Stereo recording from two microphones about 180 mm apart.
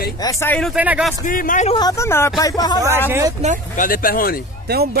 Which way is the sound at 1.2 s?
50° left (ahead or behind).